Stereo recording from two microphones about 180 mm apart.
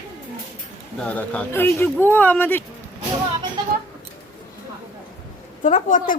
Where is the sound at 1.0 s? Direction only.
10° left (ahead or behind).